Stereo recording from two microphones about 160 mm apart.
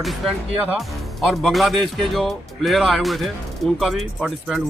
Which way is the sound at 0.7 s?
Centre (ahead or behind).